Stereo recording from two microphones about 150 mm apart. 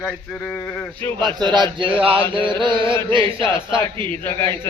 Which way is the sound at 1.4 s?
30° right (ahead or behind).